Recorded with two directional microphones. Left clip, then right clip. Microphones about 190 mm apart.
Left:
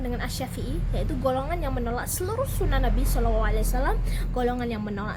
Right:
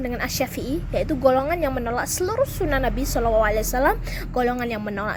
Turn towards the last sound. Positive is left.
turn(degrees=-35)  # may be behind; listen again after turning